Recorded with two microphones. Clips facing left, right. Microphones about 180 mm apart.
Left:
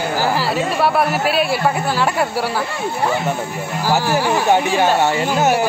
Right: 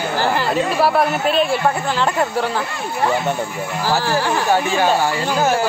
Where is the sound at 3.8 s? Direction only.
15° left (ahead or behind).